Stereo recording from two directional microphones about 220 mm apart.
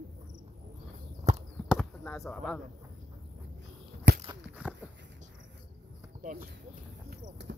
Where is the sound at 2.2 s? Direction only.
5° left (ahead or behind).